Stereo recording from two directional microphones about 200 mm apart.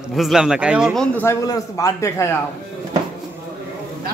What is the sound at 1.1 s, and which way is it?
A man's voice, 15° left (ahead or behind).